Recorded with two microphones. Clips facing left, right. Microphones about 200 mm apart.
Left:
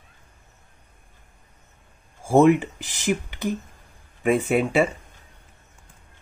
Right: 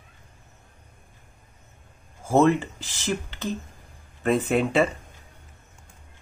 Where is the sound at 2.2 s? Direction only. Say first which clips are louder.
Left 3 dB; 15° left (ahead or behind).